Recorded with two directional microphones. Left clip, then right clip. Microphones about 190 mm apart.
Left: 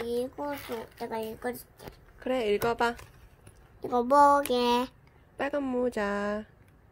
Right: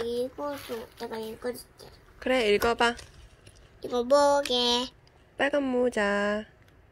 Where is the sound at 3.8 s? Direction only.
40° left (ahead or behind).